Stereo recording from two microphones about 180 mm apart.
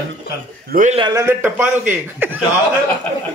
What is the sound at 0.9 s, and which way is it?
Speech, 25° right (ahead or behind).